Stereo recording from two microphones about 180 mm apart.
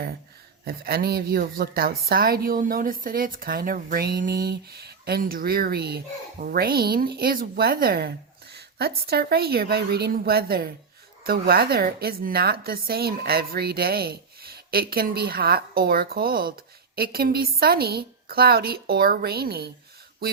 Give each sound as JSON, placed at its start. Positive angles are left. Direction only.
{"t": 0.6, "sound": "a woman's voice", "side_deg": -60}